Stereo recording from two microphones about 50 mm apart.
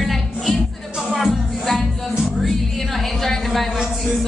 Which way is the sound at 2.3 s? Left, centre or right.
Centre.